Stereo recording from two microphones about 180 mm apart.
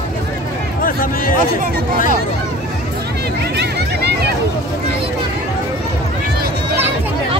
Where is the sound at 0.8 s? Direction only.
50° left (ahead or behind).